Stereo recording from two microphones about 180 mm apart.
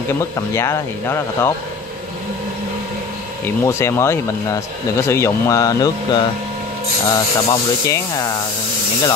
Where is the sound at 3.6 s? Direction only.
15° left (ahead or behind).